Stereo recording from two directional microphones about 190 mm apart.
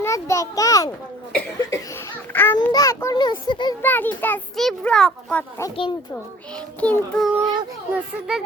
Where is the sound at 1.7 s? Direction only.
15° left (ahead or behind).